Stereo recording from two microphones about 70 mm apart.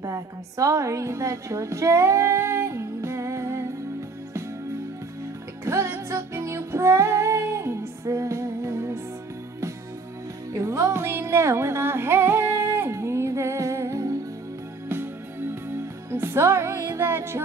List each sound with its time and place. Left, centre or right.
0.0 s a woman's voice: right
5.7 s music: right
10.5 s music: right
14.9 s music: right
17.0 s music: right